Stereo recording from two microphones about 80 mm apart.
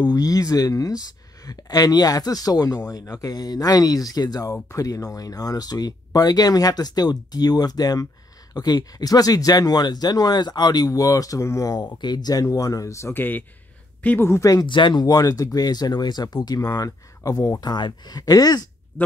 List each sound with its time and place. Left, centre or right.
0.0 s speech: left
4.6 s speech: left
11.8 s speech: left
12.4 s a woman's voice: left
14.3 s speech: left
14.7 s speech: left